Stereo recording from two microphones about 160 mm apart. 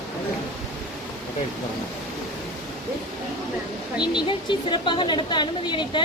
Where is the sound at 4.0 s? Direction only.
30° left (ahead or behind).